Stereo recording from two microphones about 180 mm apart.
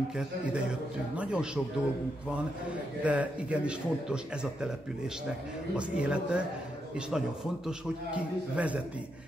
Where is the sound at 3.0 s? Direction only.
5° right (ahead or behind).